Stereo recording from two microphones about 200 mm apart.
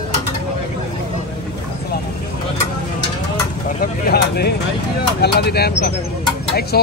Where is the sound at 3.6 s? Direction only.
45° left (ahead or behind).